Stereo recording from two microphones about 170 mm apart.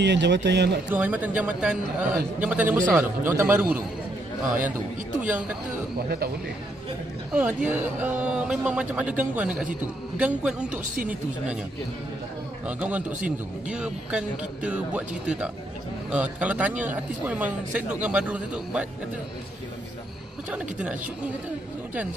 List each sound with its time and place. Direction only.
0.0 s a man's voice: 90° right
0.8 s speech: 10° right (ahead or behind)
5.9 s speech: 65° right (ahead or behind)
7.3 s speech: 10° right (ahead or behind)
12.6 s speech: 10° right (ahead or behind)